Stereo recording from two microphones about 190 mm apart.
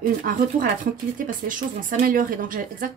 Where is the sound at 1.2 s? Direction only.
45° right (ahead or behind).